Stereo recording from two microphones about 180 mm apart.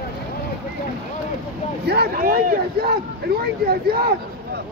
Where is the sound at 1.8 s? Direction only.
65° right (ahead or behind).